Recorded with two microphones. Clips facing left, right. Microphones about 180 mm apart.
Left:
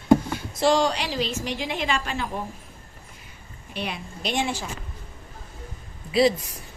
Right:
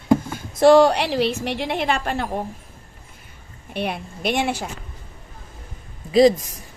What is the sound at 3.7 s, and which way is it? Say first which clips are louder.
Speech: right 5 dB; 55° right (ahead or behind).